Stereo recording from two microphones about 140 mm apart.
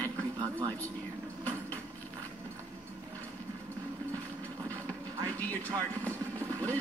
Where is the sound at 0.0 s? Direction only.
25° right (ahead or behind).